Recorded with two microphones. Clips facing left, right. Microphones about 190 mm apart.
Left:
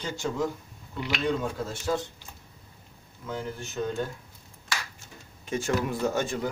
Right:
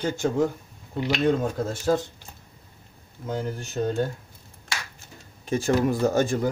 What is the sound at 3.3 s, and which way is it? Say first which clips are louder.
Speech: right 4 dB; 40° right (ahead or behind).